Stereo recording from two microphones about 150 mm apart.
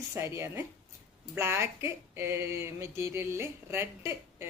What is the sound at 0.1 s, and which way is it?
Speech, 15° right (ahead or behind).